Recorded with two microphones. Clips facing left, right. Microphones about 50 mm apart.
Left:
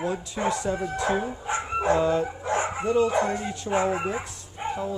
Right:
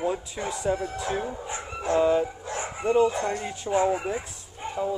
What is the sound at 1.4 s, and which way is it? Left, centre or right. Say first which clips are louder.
Music: left 6 dB; left.